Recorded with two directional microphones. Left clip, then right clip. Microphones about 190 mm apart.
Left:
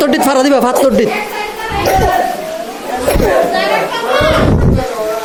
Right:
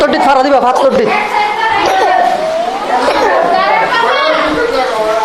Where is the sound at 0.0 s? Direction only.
80° left.